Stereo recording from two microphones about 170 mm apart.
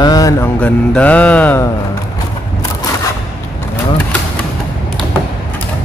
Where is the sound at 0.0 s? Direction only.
20° left (ahead or behind).